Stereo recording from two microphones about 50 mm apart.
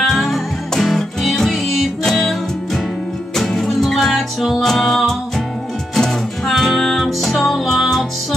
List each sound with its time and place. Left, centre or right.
0.0 s music: centre